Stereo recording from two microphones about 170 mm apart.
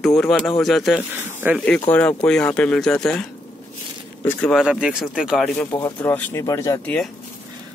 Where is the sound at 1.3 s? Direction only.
15° right (ahead or behind).